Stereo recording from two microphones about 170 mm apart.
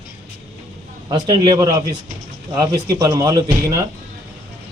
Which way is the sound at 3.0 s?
20° right (ahead or behind).